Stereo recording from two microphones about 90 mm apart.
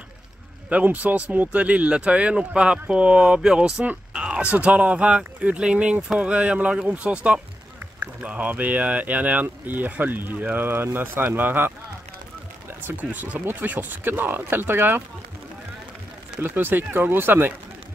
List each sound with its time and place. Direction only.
0.7 s speech: 15° right (ahead or behind)
12.8 s speech: 20° right (ahead or behind)
16.3 s speech: 25° right (ahead or behind)